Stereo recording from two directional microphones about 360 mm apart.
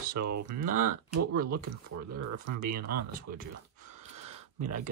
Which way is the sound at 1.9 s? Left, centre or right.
Right.